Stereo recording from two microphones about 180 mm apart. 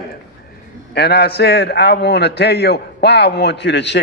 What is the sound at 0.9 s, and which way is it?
A man's voice, 65° left (ahead or behind).